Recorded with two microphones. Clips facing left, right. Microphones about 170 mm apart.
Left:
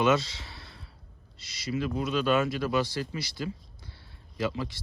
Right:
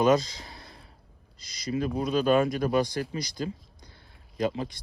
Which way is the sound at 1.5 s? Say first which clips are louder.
Right 2 dB; 35° right (ahead or behind).